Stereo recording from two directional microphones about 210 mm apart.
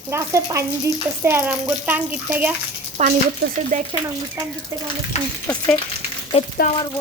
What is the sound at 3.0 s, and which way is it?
Speech, 35° right (ahead or behind).